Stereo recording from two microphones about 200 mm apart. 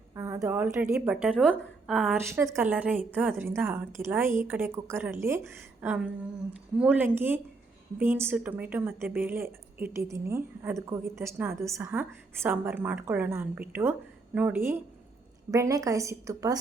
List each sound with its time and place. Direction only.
0.1 s a woman's voice: 15° right (ahead or behind)
2.3 s a woman's voice: 10° right (ahead or behind)